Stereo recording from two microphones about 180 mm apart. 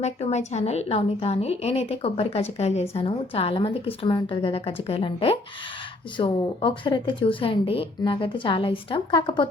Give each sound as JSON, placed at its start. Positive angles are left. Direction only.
{"t": 0.0, "sound": "a woman's voice", "side_deg": 35}